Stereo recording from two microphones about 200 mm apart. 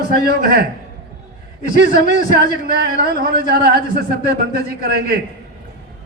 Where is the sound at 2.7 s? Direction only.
50° right (ahead or behind).